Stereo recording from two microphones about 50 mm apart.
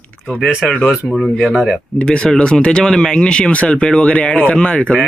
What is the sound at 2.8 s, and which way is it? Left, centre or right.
Speech, centre.